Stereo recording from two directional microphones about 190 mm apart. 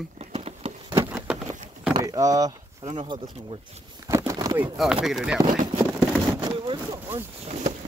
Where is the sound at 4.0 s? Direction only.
15° right (ahead or behind).